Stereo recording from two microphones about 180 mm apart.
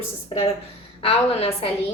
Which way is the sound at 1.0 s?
35° left (ahead or behind).